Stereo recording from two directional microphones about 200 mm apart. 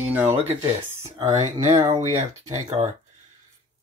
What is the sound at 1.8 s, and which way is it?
Speech, 15° right (ahead or behind).